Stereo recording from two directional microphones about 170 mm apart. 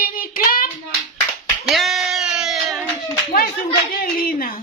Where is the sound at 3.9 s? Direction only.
55° left (ahead or behind).